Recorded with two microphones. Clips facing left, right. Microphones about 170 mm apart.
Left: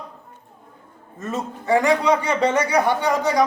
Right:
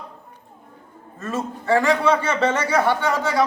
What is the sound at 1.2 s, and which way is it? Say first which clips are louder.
A man's voice: right 1 dB; 20° left (ahead or behind).